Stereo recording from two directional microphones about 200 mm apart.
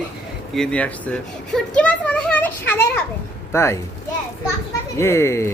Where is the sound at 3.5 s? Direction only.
15° left (ahead or behind).